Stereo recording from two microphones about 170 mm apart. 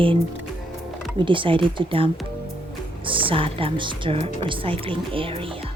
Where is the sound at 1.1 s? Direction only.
30° right (ahead or behind).